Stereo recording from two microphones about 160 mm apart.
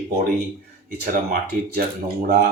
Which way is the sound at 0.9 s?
70° right (ahead or behind).